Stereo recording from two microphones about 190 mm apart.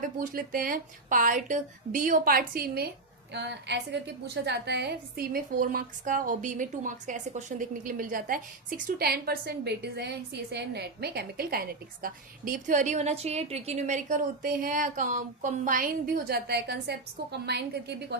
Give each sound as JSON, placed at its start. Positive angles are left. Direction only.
{"t": 0.2, "sound": "a woman's voice", "side_deg": -50}